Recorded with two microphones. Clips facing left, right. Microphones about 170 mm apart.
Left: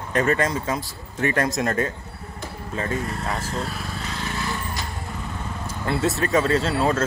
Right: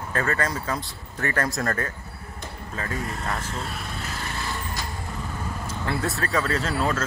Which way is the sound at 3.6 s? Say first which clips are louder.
Left 3 dB; centre (ahead or behind).